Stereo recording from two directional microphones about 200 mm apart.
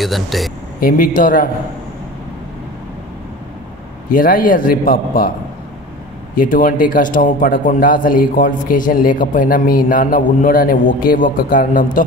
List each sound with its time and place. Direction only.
0.0 s speech: centre (ahead or behind)
0.7 s a man's voice: 45° left (ahead or behind)
4.1 s a man's voice: 45° left (ahead or behind)
6.3 s a man's voice: 45° left (ahead or behind)